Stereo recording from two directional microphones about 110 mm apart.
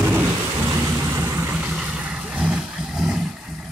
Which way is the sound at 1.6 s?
10° right (ahead or behind).